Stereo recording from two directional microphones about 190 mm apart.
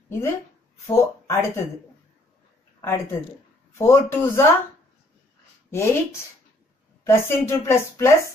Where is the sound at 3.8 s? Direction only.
15° left (ahead or behind).